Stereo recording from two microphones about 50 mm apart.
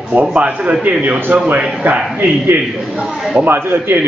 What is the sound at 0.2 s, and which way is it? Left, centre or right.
A man's voice, centre.